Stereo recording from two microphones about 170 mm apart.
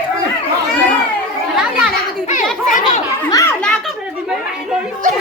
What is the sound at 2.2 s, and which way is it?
Children playing, 45° left (ahead or behind).